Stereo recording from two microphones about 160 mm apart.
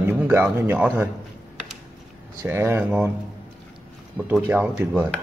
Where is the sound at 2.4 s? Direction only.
15° right (ahead or behind).